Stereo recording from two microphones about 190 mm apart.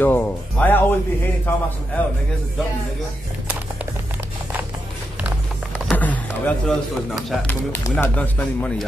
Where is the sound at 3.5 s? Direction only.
5° right (ahead or behind).